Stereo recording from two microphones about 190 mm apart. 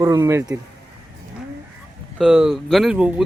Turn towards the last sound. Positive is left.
turn(degrees=-5)  # may be behind; listen again after turning